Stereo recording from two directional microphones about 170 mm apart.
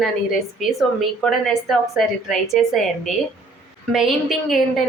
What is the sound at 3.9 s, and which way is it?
Speech, centre (ahead or behind).